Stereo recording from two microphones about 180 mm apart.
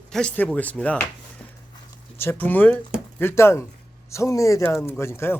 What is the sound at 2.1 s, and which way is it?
Speech, 10° left (ahead or behind).